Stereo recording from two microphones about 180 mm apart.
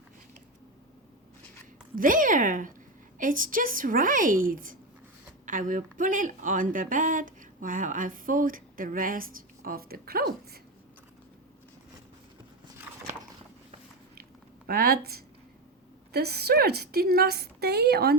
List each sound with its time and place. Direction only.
2.0 s speech: 50° right (ahead or behind)
14.7 s a woman's voice: 55° right (ahead or behind)